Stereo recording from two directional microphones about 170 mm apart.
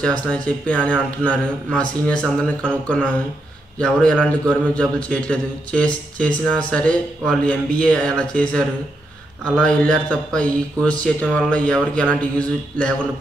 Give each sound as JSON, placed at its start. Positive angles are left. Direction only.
{"t": 0.0, "sound": "a man's voice", "side_deg": 5}